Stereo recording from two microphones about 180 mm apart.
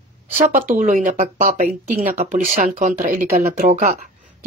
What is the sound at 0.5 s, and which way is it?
Speech, 50° right (ahead or behind).